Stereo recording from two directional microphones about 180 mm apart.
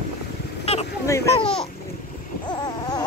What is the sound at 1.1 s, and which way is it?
Speech, 15° left (ahead or behind).